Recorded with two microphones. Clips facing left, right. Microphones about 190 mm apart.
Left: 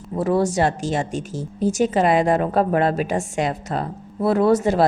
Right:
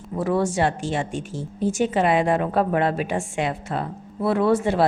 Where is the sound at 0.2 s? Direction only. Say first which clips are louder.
Left 2 dB; 35° left (ahead or behind).